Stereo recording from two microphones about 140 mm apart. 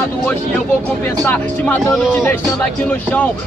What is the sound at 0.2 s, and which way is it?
Speech, 10° left (ahead or behind).